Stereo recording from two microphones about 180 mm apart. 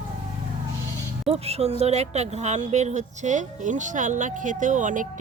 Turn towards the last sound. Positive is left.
turn(degrees=-45)  # may be behind; listen again after turning